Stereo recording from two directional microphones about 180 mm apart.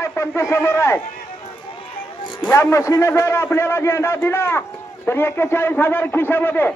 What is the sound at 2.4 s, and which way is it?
A man's voice, 15° left (ahead or behind).